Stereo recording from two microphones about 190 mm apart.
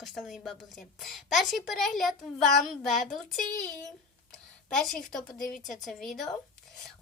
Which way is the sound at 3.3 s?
45° left (ahead or behind).